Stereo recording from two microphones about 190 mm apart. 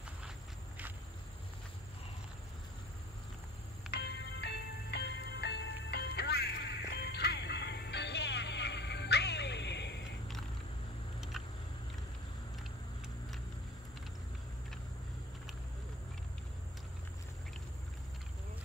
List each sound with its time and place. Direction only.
3.9 s music: 60° left (ahead or behind)